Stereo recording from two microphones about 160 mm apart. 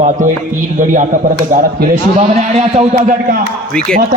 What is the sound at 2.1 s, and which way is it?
A man's voice, 45° right (ahead or behind).